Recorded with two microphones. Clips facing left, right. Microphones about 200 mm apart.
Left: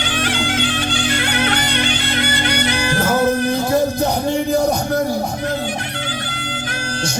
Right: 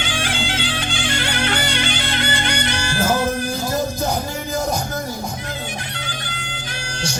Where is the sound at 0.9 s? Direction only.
60° left (ahead or behind).